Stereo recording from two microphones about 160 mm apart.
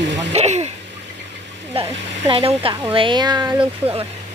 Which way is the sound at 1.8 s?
35° right (ahead or behind).